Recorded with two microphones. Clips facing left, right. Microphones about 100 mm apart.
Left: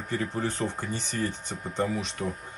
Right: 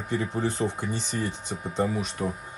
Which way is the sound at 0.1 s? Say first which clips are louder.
Right 2 dB; 15° right (ahead or behind).